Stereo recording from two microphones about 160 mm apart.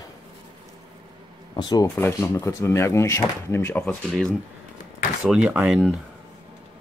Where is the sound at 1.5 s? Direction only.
25° left (ahead or behind).